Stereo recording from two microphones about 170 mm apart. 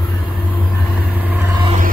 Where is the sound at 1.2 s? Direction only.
10° right (ahead or behind).